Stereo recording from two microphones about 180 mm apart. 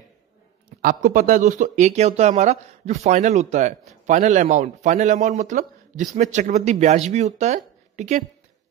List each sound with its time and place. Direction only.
0.8 s speech: 45° right (ahead or behind)